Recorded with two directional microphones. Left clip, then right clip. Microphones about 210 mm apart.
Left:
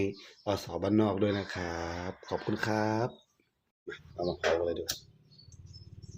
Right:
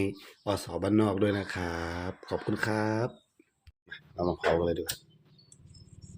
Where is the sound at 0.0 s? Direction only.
10° right (ahead or behind).